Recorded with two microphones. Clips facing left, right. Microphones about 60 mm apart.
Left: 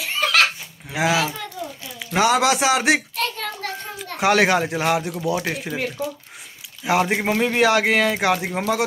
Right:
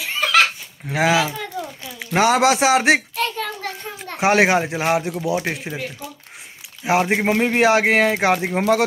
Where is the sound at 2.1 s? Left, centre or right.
Right.